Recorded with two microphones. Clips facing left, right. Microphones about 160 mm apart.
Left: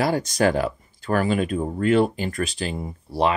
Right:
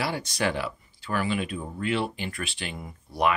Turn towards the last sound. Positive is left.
turn(degrees=30)  # may be behind; listen again after turning